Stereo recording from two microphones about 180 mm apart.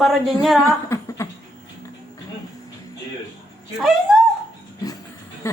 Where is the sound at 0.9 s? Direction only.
15° left (ahead or behind).